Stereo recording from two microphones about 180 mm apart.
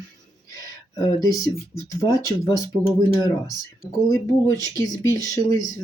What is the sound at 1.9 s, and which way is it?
Speech, 20° left (ahead or behind).